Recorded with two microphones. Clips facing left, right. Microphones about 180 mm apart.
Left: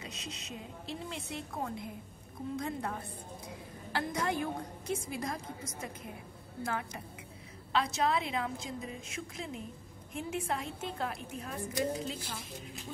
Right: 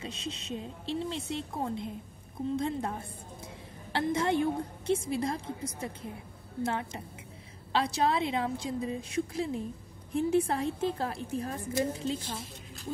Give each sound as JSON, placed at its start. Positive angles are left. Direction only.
{"t": 0.0, "sound": "a woman's voice", "side_deg": -30}